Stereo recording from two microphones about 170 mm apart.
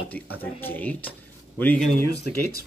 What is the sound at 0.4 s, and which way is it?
Speech, 10° left (ahead or behind).